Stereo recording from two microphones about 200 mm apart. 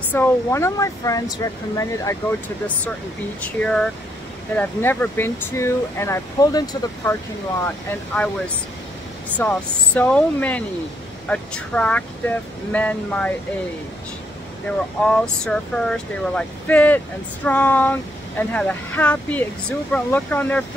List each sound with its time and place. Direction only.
0.1 s speech: 10° left (ahead or behind)
3.4 s speech: 5° left (ahead or behind); by 7.2 s 20° left (ahead or behind)
7.6 s speech: 5° left (ahead or behind)
9.4 s speech: 10° left (ahead or behind)
14.7 s speech: 10° left (ahead or behind)